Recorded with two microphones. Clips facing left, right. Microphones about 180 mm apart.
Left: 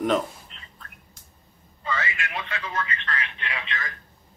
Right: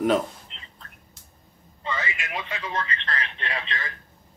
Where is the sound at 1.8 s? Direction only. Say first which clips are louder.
Left 1 dB; 20° right (ahead or behind).